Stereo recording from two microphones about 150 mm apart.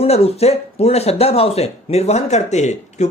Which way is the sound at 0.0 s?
45° left (ahead or behind).